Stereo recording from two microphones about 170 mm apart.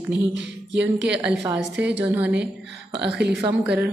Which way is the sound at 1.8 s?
10° right (ahead or behind).